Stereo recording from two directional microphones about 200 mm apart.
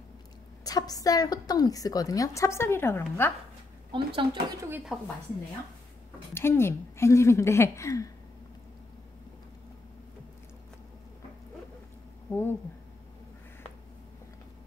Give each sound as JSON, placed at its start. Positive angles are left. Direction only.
{"t": 0.7, "sound": "a woman's voice", "side_deg": 20}
{"t": 3.9, "sound": "speech", "side_deg": -25}
{"t": 4.6, "sound": "speech", "side_deg": -10}
{"t": 6.3, "sound": "a woman's voice", "side_deg": 10}
{"t": 12.3, "sound": "speech", "side_deg": 15}